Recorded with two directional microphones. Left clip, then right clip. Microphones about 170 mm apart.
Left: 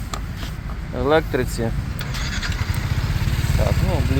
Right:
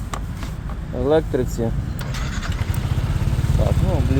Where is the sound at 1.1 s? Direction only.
15° right (ahead or behind).